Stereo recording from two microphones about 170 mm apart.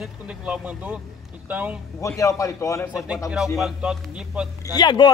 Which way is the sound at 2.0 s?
20° left (ahead or behind).